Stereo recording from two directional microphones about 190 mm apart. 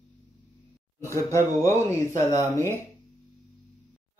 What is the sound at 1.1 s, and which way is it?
Speech, 15° left (ahead or behind).